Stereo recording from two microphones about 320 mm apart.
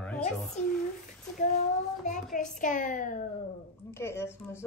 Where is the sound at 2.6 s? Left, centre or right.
Left.